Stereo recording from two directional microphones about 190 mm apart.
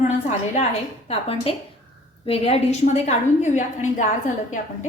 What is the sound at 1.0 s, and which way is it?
A woman's voice, 30° left (ahead or behind).